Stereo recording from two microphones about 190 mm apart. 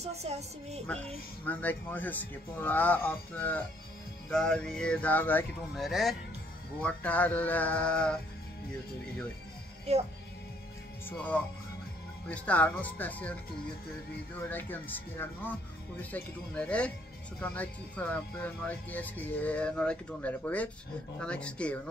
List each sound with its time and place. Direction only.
0.0 s a woman's voice: 35° right (ahead or behind)
1.4 s speech: 10° left (ahead or behind)
11.1 s speech: 5° left (ahead or behind)
14.5 s speech: 10° left (ahead or behind)